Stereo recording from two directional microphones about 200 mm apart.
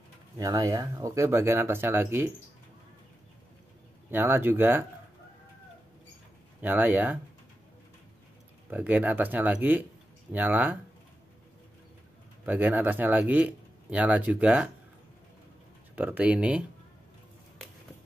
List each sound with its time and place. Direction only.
0.4 s speech: 20° right (ahead or behind)
4.1 s speech: 10° right (ahead or behind)
6.6 s speech: 10° right (ahead or behind)
8.6 s speech: 10° right (ahead or behind)
12.4 s speech: 10° right (ahead or behind)
16.0 s speech: 5° right (ahead or behind)